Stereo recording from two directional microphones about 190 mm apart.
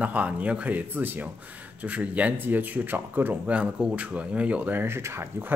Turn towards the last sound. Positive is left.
turn(degrees=-15)  # may be behind; listen again after turning